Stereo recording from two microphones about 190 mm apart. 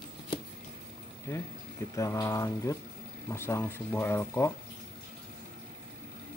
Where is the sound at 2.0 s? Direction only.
15° left (ahead or behind).